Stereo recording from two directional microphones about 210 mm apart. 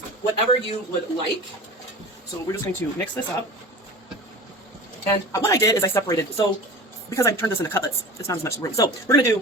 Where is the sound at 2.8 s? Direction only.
10° left (ahead or behind).